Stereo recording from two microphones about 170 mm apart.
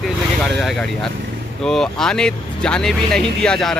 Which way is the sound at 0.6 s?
Centre (ahead or behind).